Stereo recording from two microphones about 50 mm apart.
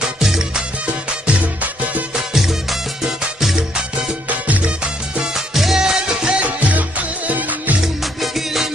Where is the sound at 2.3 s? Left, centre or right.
Centre.